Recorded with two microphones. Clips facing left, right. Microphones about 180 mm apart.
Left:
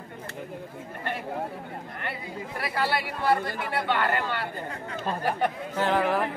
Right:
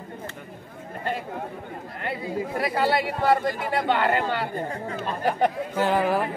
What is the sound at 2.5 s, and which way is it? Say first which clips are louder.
Speech: right 4 dB; 25° right (ahead or behind).